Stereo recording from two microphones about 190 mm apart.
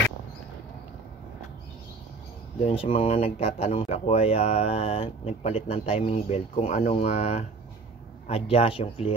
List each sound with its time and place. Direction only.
2.6 s speech: 30° left (ahead or behind)